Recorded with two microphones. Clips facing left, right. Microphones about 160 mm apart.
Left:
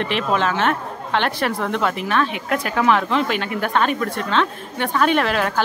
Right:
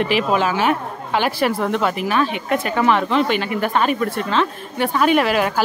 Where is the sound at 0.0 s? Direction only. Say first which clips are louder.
Right 2 dB; 5° right (ahead or behind).